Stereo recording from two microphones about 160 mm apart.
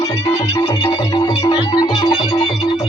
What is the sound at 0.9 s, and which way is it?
Music, 25° left (ahead or behind).